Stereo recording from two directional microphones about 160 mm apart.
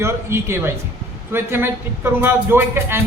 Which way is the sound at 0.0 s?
15° right (ahead or behind).